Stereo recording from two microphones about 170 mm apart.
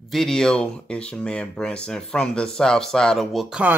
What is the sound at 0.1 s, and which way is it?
Speech, centre (ahead or behind).